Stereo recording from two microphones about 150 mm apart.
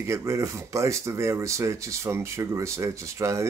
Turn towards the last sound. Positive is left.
turn(degrees=-20)  # may be behind; listen again after turning